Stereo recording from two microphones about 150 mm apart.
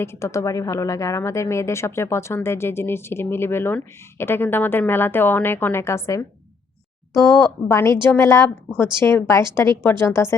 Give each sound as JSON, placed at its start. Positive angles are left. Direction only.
{"t": 0.0, "sound": "speech", "side_deg": 20}
{"t": 7.7, "sound": "a woman's voice", "side_deg": 20}